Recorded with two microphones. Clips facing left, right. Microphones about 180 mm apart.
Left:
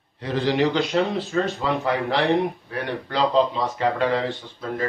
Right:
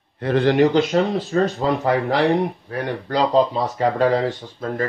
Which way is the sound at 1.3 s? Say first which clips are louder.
Right 5 dB; 45° right (ahead or behind).